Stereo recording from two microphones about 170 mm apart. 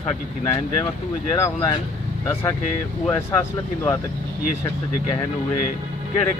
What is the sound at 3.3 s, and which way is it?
Speech, 15° left (ahead or behind).